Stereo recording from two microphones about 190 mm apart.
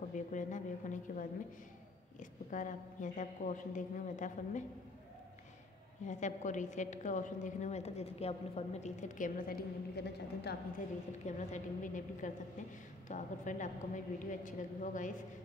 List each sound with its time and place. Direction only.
0.1 s a woman's voice: 40° left (ahead or behind)
6.0 s a woman's voice: 40° left (ahead or behind); by 10.6 s 55° left (ahead or behind)
11.2 s a woman's voice: 40° left (ahead or behind)